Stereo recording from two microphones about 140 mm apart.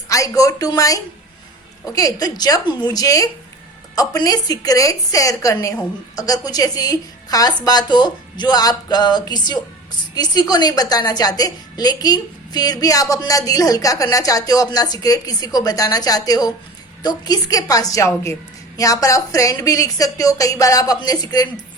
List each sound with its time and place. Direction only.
0.1 s a woman's voice: 25° left (ahead or behind)